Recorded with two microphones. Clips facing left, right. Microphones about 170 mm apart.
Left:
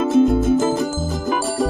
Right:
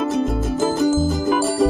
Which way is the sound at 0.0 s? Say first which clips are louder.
Left 6 dB; centre (ahead or behind).